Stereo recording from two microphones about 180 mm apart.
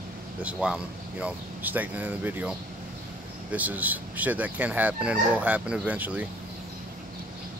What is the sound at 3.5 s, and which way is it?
Speech, 10° right (ahead or behind).